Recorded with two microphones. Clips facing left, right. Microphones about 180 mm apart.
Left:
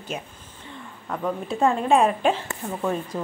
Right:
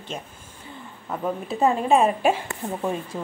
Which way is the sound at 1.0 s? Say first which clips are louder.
Even; 5° right (ahead or behind).